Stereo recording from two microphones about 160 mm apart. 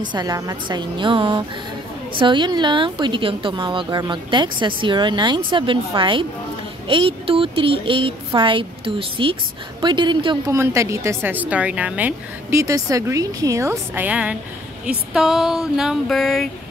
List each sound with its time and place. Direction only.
0.0 s a woman's voice: 25° right (ahead or behind)
10.6 s a woman's voice: 20° right (ahead or behind)
14.9 s a sound: 5° right (ahead or behind)